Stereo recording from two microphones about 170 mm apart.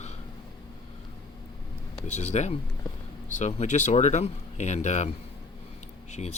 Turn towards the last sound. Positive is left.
turn(degrees=40)  # may be behind; listen again after turning